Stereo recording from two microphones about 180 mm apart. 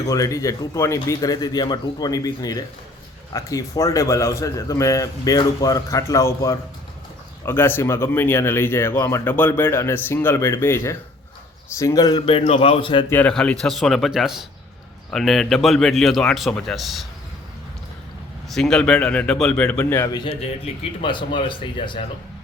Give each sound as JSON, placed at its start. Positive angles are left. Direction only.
{"t": 0.0, "sound": "a man's voice", "side_deg": 20}
{"t": 13.1, "sound": "speech", "side_deg": 10}
{"t": 18.5, "sound": "speech", "side_deg": 5}
{"t": 21.0, "sound": "a man's voice", "side_deg": 25}